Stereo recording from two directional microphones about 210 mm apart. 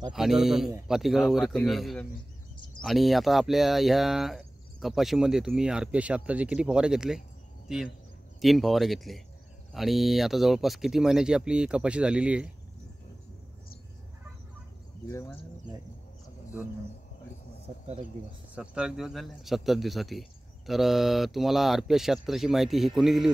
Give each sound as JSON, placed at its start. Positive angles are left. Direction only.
{"t": 0.1, "sound": "speech", "side_deg": 0}
{"t": 15.0, "sound": "speech", "side_deg": 15}
{"t": 18.5, "sound": "speech", "side_deg": -5}